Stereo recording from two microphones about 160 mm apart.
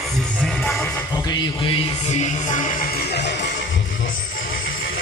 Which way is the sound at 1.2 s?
30° left (ahead or behind).